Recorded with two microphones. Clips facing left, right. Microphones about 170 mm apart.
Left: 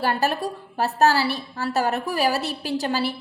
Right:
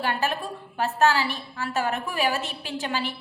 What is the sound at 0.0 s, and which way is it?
A woman's voice, 40° left (ahead or behind).